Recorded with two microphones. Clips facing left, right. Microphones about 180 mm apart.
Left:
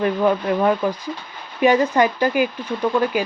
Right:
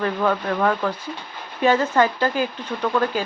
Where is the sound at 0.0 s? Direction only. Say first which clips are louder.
Left 3 dB; 15° left (ahead or behind).